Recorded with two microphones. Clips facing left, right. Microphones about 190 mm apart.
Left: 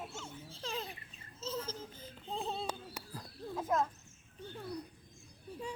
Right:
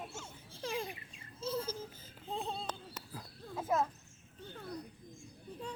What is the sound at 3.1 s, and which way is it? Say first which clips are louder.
Horse: left 4 dB; 5° right (ahead or behind).